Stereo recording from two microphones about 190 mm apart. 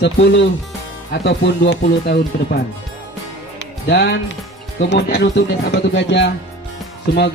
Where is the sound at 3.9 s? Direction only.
65° left (ahead or behind).